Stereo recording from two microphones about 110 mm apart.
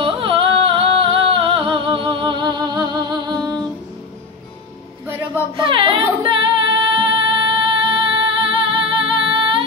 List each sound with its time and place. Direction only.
0.0 s music: 55° right (ahead or behind); by 3.5 s 40° right (ahead or behind)
5.6 s music: 55° right (ahead or behind)